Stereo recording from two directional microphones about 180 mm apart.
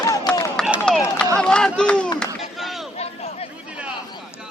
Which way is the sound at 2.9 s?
35° left (ahead or behind).